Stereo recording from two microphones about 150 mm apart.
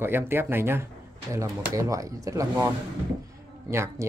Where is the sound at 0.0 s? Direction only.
15° right (ahead or behind).